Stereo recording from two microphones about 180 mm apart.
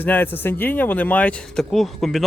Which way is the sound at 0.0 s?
10° left (ahead or behind).